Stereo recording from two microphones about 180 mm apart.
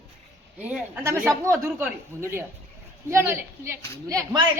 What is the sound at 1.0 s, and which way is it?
A man's voice, 15° right (ahead or behind).